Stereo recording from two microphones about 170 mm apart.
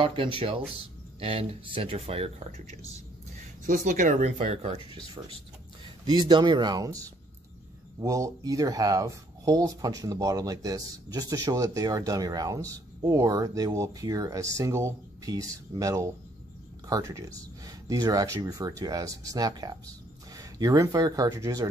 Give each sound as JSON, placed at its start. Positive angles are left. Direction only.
{"t": 0.0, "sound": "speech", "side_deg": -30}
{"t": 3.6, "sound": "speech", "side_deg": -50}
{"t": 6.0, "sound": "speech", "side_deg": -25}